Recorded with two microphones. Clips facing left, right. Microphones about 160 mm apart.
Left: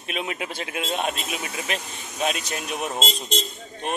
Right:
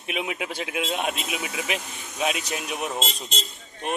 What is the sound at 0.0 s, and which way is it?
Speech, 10° right (ahead or behind).